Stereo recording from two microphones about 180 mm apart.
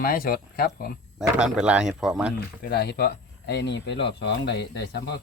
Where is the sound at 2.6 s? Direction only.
60° left (ahead or behind).